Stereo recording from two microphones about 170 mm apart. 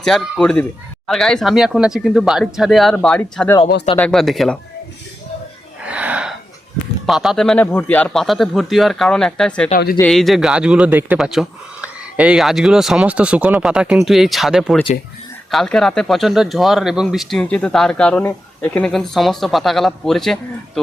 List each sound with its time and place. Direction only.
0.0 s speech: 5° left (ahead or behind)
5.8 s gasp: 10° right (ahead or behind)
7.0 s speech: centre (ahead or behind)
9.7 s speech: 60° left (ahead or behind)
10.0 s speech: 5° left (ahead or behind)